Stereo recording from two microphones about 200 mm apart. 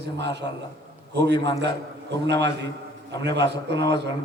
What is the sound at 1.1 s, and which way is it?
Speech, 60° right (ahead or behind).